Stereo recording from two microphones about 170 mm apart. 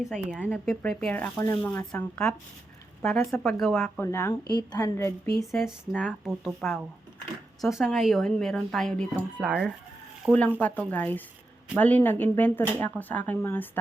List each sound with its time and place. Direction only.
0.0 s speech: 5° right (ahead or behind)
0.8 s speech: 5° left (ahead or behind)
4.0 s a woman's voice: 15° left (ahead or behind)
4.9 s speech: 15° left (ahead or behind)
5.5 s speech: centre (ahead or behind)
10.6 s speech: 10° left (ahead or behind)